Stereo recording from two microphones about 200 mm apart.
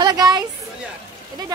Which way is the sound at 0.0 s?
20° right (ahead or behind).